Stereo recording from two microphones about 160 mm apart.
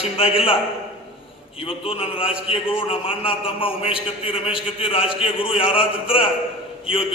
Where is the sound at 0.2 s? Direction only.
35° left (ahead or behind).